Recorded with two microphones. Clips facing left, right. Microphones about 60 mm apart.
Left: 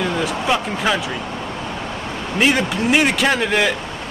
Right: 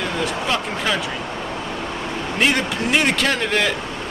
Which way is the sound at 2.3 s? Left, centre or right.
Centre.